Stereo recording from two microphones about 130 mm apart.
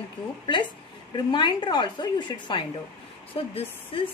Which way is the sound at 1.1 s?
35° left (ahead or behind).